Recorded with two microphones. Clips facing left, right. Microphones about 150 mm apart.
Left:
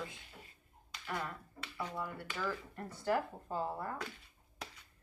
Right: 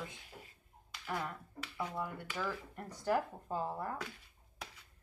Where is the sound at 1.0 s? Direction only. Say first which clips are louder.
Right 1 dB; 5° right (ahead or behind).